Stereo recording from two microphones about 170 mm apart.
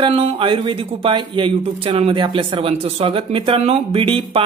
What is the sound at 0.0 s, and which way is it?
Speech, 30° right (ahead or behind).